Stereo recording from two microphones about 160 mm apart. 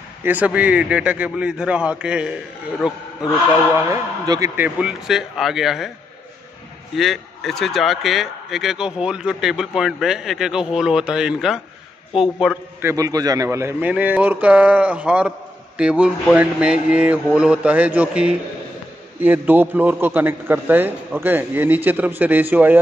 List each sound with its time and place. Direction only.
0.2 s a man's voice: 10° right (ahead or behind)
3.9 s a man's voice: 20° right (ahead or behind)
4.6 s speech: 5° right (ahead or behind)
7.0 s speech: centre (ahead or behind)
12.8 s a man's voice: 20° right (ahead or behind)